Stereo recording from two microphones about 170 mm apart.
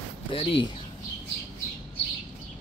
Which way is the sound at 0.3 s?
30° left (ahead or behind).